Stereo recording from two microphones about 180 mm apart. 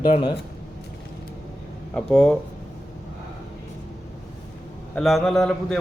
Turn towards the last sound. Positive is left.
turn(degrees=0)  # may be behind; listen again after turning